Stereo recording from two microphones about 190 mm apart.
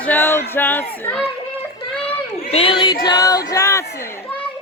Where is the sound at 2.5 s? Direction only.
30° left (ahead or behind).